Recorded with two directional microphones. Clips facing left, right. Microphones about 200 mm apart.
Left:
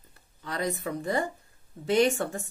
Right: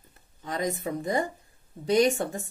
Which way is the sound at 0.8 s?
20° right (ahead or behind).